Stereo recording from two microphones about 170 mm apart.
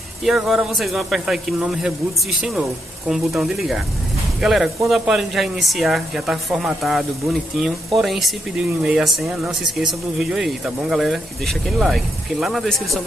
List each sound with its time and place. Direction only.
0.2 s speech: centre (ahead or behind)
3.1 s speech: centre (ahead or behind)